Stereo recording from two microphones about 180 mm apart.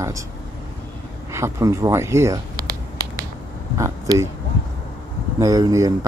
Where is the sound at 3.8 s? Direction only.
15° right (ahead or behind).